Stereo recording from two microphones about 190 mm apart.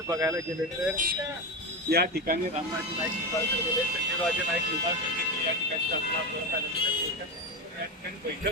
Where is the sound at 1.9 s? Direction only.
55° right (ahead or behind).